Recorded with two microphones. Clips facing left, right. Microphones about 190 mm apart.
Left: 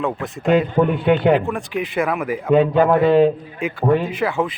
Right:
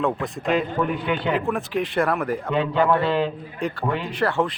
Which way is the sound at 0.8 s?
55° left (ahead or behind).